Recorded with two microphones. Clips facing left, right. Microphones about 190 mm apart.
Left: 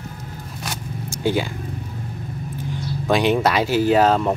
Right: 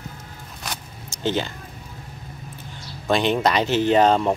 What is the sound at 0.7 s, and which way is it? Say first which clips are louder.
Zipper: left 5 dB; 10° left (ahead or behind).